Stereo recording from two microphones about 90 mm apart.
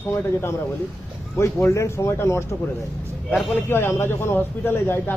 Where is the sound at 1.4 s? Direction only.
30° left (ahead or behind).